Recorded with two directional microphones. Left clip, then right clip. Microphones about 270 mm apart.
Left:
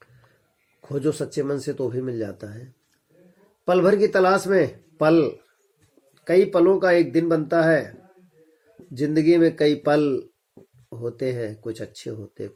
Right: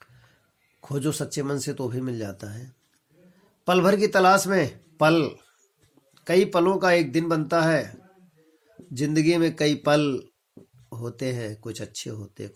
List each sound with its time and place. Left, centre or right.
0.8 s speech: right
3.6 s speech: right
9.0 s speech: right